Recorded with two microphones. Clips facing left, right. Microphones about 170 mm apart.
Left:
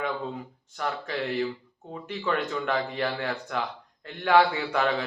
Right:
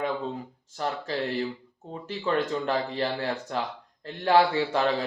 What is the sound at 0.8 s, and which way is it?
A man's voice, 30° right (ahead or behind).